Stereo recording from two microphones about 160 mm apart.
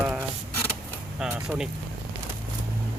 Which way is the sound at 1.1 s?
5° right (ahead or behind).